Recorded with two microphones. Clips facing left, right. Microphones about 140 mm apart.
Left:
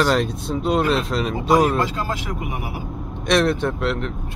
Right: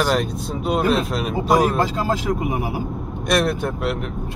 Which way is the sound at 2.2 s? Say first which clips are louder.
Right 6 dB; 35° right (ahead or behind).